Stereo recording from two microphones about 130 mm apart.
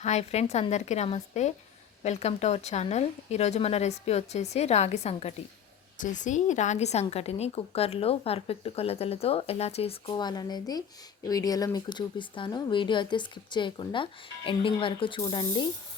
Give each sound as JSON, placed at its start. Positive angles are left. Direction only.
{"t": 0.0, "sound": "speech", "side_deg": 60}
{"t": 6.0, "sound": "a woman's voice", "side_deg": 75}
{"t": 10.2, "sound": "speech", "side_deg": 35}